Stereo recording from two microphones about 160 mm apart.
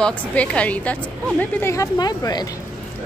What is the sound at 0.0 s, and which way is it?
A woman's voice, 5° left (ahead or behind).